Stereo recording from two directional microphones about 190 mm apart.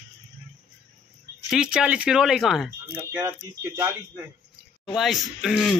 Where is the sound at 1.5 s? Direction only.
5° right (ahead or behind).